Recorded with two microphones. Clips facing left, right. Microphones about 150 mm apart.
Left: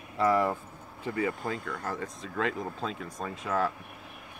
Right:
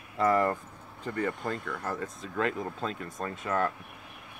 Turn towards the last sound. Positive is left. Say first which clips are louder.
# even
turn(degrees=0)  # may be behind; listen again after turning